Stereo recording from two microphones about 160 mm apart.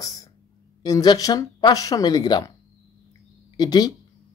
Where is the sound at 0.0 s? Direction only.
20° left (ahead or behind).